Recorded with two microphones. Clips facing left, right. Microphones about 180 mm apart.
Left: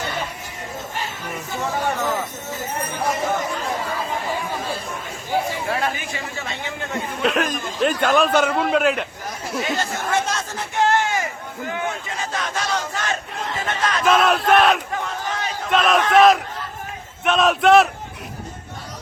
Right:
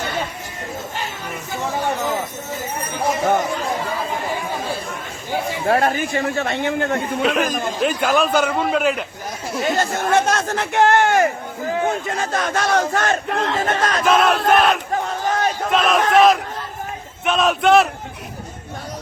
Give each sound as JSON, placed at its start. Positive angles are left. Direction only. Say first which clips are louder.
{"t": 5.6, "sound": "a man's voice", "louder": "right 7 dB", "side_deg": -50}
{"t": 7.2, "sound": "a man's voice", "louder": "even", "side_deg": 0}
{"t": 9.6, "sound": "speech", "louder": "right 7 dB", "side_deg": -50}
{"t": 11.7, "sound": "a sound", "louder": "right 6 dB", "side_deg": -35}
{"t": 12.0, "sound": "speech", "louder": "right 5 dB", "side_deg": -55}
{"t": 13.6, "sound": "a man's voice", "louder": "right 4 dB", "side_deg": -45}
{"t": 14.0, "sound": "a man's voice", "louder": "even", "side_deg": 0}
{"t": 14.9, "sound": "battle cry", "louder": "right 5 dB", "side_deg": -40}
{"t": 15.7, "sound": "a man's voice", "louder": "even", "side_deg": 0}